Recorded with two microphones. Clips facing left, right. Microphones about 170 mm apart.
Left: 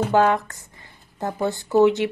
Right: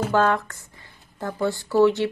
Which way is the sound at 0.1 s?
20° left (ahead or behind).